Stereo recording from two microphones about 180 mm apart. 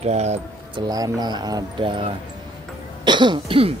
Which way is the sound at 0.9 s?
20° right (ahead or behind).